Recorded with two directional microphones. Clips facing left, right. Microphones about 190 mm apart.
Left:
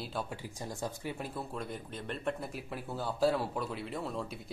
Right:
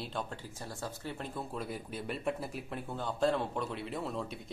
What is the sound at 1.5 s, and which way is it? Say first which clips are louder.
Speech: right 1 dB; 5° right (ahead or behind).